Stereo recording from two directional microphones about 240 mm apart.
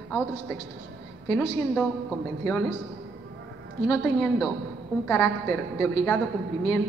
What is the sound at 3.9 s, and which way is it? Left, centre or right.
Speech, centre.